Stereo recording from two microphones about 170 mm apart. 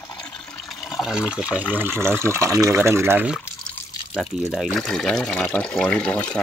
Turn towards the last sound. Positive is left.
turn(degrees=5)  # may be behind; listen again after turning